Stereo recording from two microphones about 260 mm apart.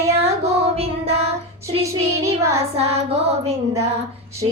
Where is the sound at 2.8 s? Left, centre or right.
Right.